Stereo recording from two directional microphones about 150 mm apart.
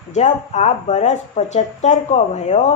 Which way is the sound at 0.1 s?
50° left (ahead or behind).